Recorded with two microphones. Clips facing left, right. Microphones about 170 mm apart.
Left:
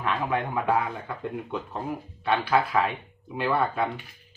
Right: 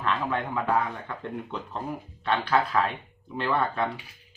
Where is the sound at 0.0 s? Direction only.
15° left (ahead or behind).